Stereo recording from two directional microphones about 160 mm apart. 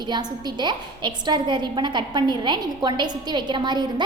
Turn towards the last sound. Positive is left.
turn(degrees=-30)  # may be behind; listen again after turning